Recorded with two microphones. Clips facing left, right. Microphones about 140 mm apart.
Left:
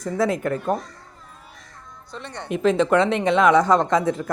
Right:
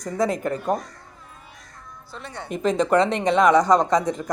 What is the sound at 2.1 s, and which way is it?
Speech, 5° right (ahead or behind).